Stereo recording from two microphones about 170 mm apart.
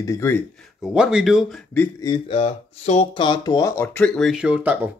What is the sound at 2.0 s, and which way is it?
Speech, 30° left (ahead or behind).